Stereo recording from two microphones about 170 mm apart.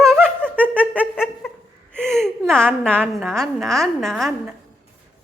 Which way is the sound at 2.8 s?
5° left (ahead or behind).